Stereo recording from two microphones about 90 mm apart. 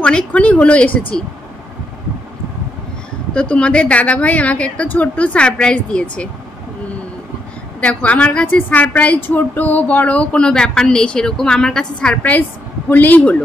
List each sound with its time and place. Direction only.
0.0 s speech: 15° left (ahead or behind)
3.3 s speech: 10° left (ahead or behind)
7.8 s speech: 15° left (ahead or behind)
12.2 s a man's voice: 20° left (ahead or behind)